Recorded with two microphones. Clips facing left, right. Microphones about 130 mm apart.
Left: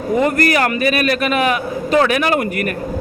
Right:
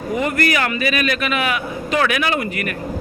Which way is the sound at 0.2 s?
40° left (ahead or behind).